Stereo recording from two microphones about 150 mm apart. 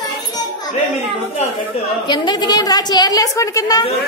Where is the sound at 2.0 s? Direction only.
30° left (ahead or behind).